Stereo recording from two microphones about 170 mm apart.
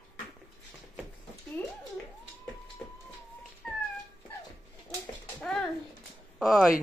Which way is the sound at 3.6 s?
5° left (ahead or behind).